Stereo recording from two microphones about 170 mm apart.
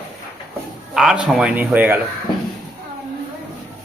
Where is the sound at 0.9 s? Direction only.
5° right (ahead or behind).